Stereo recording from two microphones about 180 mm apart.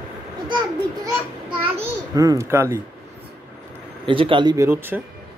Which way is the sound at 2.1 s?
15° right (ahead or behind).